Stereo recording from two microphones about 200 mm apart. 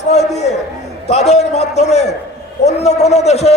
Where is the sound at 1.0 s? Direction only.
30° left (ahead or behind).